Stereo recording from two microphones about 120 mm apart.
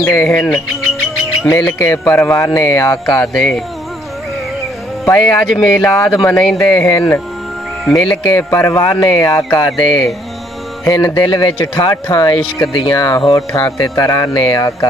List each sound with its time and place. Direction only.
0.0 s speech: 20° left (ahead or behind)
3.3 s speech: 5° left (ahead or behind)
5.0 s speech: 20° left (ahead or behind)
5.5 s speech: centre (ahead or behind)
6.1 s speech: 15° left (ahead or behind)
6.4 s speech: centre (ahead or behind)
6.9 s speech: 25° left (ahead or behind)
9.0 s music: 25° left (ahead or behind)
11.6 s speech: 30° left (ahead or behind)